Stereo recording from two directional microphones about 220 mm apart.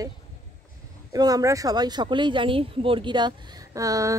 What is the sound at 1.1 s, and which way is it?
Speech, 15° right (ahead or behind).